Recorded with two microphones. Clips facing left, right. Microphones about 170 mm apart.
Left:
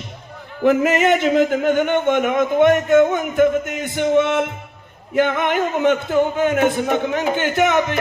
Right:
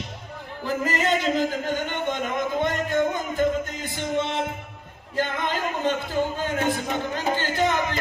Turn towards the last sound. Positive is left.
turn(degrees=65)  # may be behind; listen again after turning